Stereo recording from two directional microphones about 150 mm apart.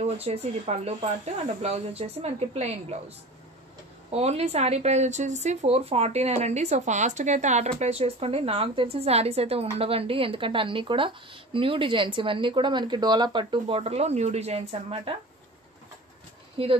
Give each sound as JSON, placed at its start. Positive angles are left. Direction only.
{"t": 0.0, "sound": "speech", "side_deg": -45}
{"t": 4.1, "sound": "a woman's voice", "side_deg": -45}
{"t": 16.6, "sound": "a woman's voice", "side_deg": -40}